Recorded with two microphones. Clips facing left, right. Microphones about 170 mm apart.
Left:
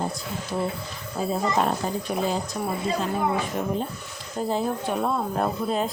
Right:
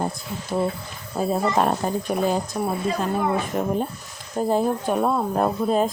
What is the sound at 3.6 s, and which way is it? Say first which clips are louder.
Speech: right 3 dB; 50° right (ahead or behind).